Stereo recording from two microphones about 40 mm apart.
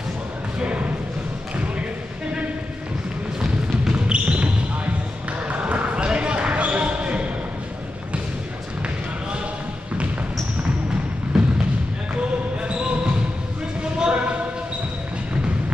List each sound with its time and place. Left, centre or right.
0.6 s speech: right
3.3 s basketball bounce: right
5.5 s basketball bounce: right
11.3 s basketball bounce: centre
12.6 s basketball bounce: right